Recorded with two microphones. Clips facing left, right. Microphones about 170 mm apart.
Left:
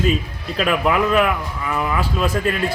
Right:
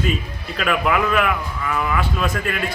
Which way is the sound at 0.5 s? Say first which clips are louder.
Left 2 dB; 25° left (ahead or behind).